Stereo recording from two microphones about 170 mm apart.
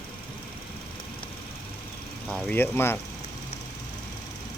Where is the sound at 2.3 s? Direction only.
10° left (ahead or behind).